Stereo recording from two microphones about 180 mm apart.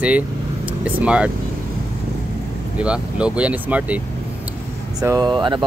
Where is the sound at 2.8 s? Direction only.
5° right (ahead or behind).